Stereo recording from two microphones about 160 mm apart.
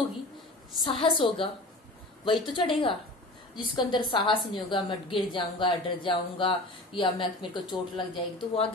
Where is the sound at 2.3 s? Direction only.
30° left (ahead or behind).